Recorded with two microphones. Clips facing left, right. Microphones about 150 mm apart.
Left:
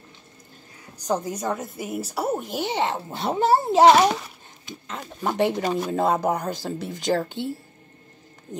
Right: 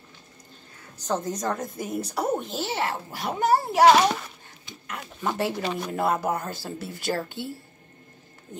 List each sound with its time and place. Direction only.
1.0 s a child's voice: 10° left (ahead or behind)
5.2 s a child's voice: 20° left (ahead or behind)